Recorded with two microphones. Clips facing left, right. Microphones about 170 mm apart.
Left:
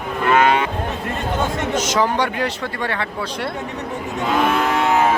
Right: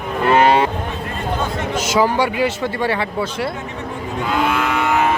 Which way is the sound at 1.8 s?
5° right (ahead or behind).